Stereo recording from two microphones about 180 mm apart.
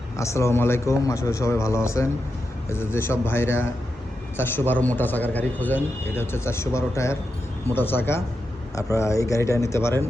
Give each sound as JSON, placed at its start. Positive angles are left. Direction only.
{"t": 0.2, "sound": "a man's voice", "side_deg": 15}